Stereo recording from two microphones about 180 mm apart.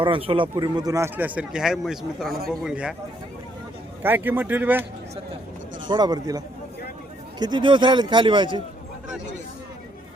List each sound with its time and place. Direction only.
0.0 s a man's voice: 30° right (ahead or behind); by 2.9 s 5° right (ahead or behind)
4.0 s speech: 10° right (ahead or behind)
5.9 s a man's voice: 20° right (ahead or behind)